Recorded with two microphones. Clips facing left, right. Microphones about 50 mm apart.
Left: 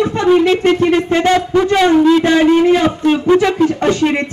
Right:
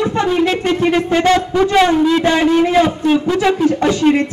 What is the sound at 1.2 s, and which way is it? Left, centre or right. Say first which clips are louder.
Speech: left 1 dB; centre.